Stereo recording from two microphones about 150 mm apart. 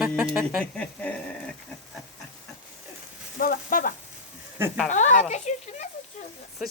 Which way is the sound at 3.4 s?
70° left (ahead or behind).